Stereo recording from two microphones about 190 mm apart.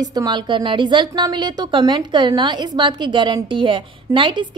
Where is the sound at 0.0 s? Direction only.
20° right (ahead or behind).